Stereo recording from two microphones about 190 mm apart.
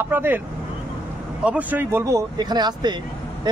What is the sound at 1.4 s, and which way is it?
Speech, 5° right (ahead or behind).